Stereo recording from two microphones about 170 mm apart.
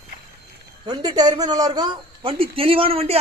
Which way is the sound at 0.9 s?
25° right (ahead or behind).